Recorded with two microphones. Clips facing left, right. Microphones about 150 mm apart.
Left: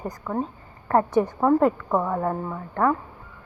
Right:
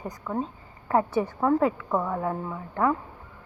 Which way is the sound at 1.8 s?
10° left (ahead or behind).